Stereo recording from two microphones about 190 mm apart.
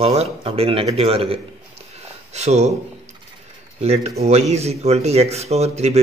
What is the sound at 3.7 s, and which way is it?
Speech, 35° right (ahead or behind).